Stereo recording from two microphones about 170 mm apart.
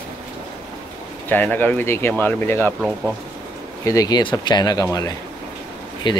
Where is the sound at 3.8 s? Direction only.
20° left (ahead or behind).